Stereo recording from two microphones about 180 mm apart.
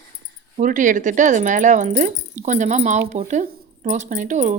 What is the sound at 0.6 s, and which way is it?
A woman's voice, 45° right (ahead or behind).